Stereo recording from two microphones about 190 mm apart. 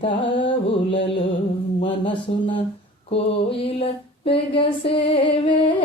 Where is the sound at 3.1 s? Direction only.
30° left (ahead or behind).